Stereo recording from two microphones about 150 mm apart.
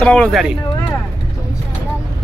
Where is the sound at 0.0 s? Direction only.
5° left (ahead or behind).